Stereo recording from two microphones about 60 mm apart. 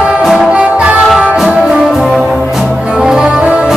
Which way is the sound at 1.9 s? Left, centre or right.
Centre.